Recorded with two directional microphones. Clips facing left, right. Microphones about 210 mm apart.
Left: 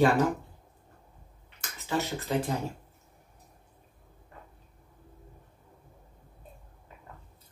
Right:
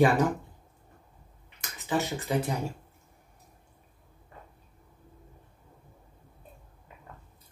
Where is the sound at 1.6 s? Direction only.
15° right (ahead or behind).